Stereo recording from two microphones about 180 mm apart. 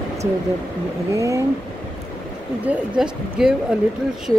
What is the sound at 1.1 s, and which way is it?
Speech, 15° right (ahead or behind).